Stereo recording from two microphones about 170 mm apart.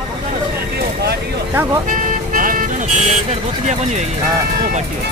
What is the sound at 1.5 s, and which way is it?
Speech, 10° right (ahead or behind).